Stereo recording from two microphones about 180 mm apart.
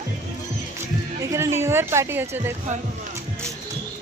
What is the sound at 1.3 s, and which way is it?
Speech, 15° right (ahead or behind).